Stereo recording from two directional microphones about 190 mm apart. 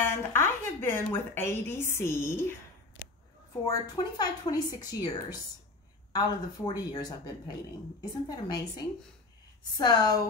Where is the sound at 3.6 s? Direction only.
20° left (ahead or behind).